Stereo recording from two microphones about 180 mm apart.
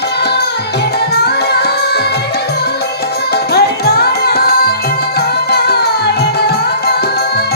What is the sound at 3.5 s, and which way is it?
Music, 60° left (ahead or behind).